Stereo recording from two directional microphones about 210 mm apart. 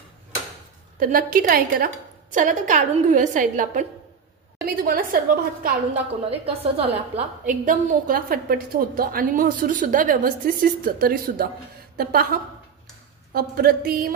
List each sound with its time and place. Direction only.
0.9 s a woman's voice: 40° right (ahead or behind)
6.4 s a woman's voice: 30° right (ahead or behind); by 14.1 s 45° right (ahead or behind)